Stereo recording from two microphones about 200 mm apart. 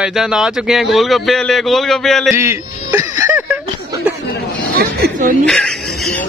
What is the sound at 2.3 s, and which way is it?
Music, 15° right (ahead or behind).